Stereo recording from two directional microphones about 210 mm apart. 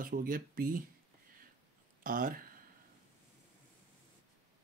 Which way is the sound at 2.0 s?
40° right (ahead or behind).